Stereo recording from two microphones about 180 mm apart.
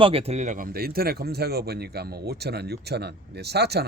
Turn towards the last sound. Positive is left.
turn(degrees=-65)  # may be behind; listen again after turning